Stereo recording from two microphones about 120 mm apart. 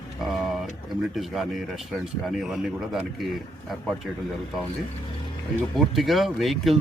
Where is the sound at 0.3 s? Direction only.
Centre (ahead or behind).